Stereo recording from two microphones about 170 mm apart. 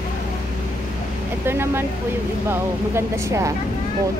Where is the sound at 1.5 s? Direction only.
15° right (ahead or behind).